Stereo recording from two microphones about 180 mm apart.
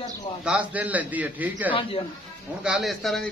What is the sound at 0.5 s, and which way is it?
A man's voice, 10° right (ahead or behind).